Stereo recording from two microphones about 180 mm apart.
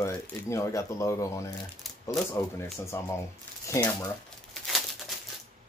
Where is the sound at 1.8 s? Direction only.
Centre (ahead or behind).